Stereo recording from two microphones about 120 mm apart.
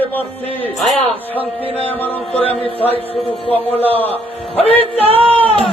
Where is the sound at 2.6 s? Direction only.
55° left (ahead or behind).